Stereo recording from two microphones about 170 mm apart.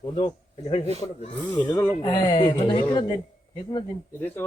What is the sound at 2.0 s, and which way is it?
Speech, 30° left (ahead or behind).